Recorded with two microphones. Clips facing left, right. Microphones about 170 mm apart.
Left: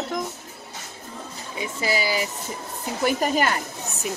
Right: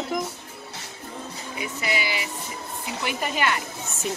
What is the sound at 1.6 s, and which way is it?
Speech, 35° left (ahead or behind).